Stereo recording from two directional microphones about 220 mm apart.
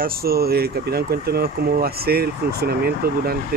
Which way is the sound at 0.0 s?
45° right (ahead or behind).